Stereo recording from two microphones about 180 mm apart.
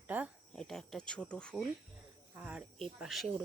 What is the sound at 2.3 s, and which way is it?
Speech, 5° right (ahead or behind).